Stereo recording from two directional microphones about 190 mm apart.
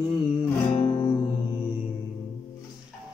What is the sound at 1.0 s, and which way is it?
Music, 20° left (ahead or behind).